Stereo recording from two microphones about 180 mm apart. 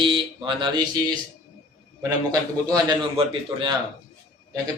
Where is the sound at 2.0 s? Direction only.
20° right (ahead or behind).